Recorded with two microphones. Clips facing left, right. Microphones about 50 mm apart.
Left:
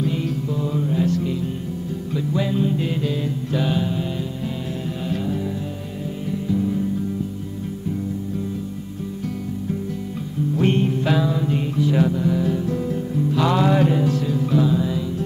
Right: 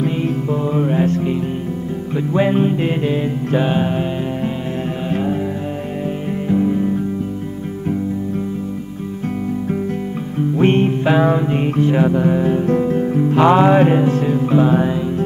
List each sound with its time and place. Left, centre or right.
0.0 s music: right
5.1 s music: right
6.4 s music: right
10.5 s music: right